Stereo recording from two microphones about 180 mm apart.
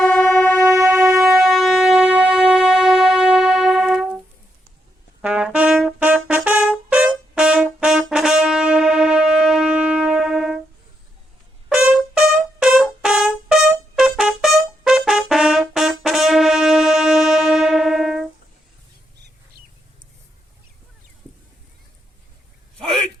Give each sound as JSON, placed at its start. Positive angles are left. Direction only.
{"t": 0.0, "sound": "train", "side_deg": 5}
{"t": 0.6, "sound": "music", "side_deg": -5}
{"t": 5.2, "sound": "brass instrument", "side_deg": -5}
{"t": 11.7, "sound": "brass instrument", "side_deg": -5}